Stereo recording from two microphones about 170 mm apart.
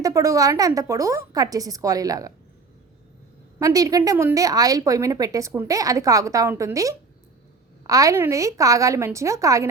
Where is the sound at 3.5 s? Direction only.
20° right (ahead or behind).